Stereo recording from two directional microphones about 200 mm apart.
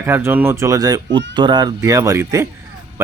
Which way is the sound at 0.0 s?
10° right (ahead or behind).